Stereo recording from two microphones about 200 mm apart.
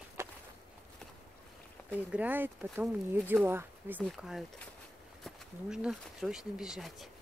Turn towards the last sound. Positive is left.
turn(degrees=0)  # may be behind; listen again after turning